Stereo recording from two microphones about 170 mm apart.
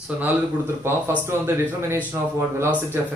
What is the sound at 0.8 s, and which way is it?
Speech, 15° right (ahead or behind).